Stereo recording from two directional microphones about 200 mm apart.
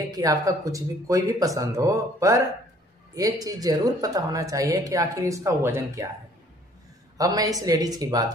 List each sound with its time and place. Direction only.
0.1 s speech: 15° right (ahead or behind)
7.2 s speech: 20° right (ahead or behind)